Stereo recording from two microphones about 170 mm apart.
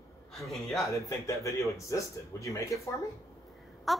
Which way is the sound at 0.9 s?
20° left (ahead or behind).